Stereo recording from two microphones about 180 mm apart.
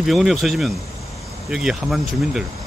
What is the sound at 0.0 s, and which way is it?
Speech, centre (ahead or behind).